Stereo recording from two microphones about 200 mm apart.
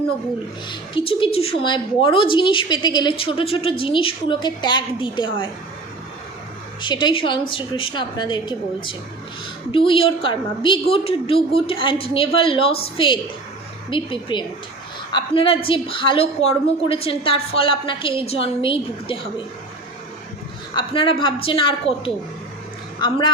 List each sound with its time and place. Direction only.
0.7 s a woman's voice: 25° left (ahead or behind)
6.8 s a woman's voice: 25° left (ahead or behind)
20.7 s a woman's voice: 25° left (ahead or behind)